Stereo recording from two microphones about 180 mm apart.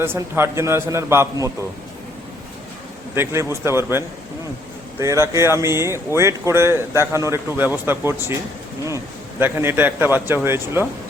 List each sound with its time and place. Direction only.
0.0 s speech: 15° right (ahead or behind)
3.2 s speech: 15° right (ahead or behind)
9.4 s speech: 10° right (ahead or behind)